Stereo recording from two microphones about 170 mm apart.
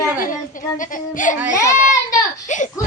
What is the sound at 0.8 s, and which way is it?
Speech, 50° left (ahead or behind).